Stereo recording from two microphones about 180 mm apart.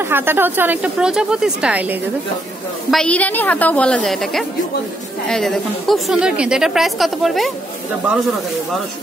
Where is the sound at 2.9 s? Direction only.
5° left (ahead or behind).